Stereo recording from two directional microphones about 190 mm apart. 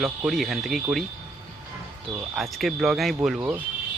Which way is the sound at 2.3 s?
Centre (ahead or behind).